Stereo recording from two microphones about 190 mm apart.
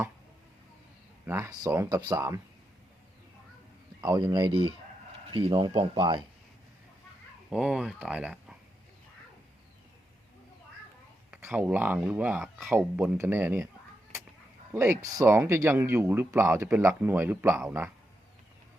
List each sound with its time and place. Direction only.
1.2 s speech: 15° right (ahead or behind)
4.0 s speech: 20° right (ahead or behind)
7.5 s speech: 5° right (ahead or behind)
11.3 s speech: 10° right (ahead or behind)
14.7 s speech: 15° right (ahead or behind)